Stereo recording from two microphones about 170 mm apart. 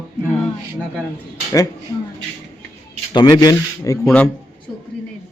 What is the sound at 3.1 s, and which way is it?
Speech, 25° left (ahead or behind).